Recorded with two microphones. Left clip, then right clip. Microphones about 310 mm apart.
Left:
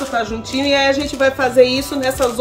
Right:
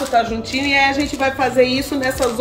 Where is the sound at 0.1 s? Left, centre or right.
Left.